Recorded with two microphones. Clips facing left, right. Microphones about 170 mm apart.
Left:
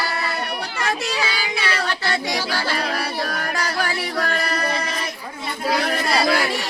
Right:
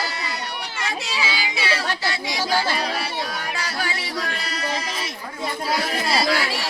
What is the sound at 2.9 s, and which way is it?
Music, 60° left (ahead or behind).